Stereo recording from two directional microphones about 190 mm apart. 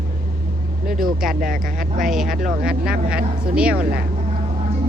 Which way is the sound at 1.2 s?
50° right (ahead or behind).